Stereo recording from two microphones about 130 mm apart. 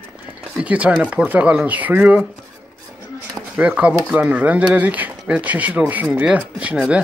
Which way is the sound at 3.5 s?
10° right (ahead or behind).